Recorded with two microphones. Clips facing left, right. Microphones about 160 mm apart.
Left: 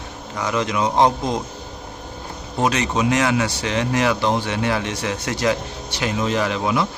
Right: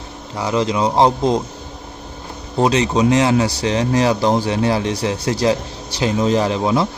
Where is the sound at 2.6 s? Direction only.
30° right (ahead or behind).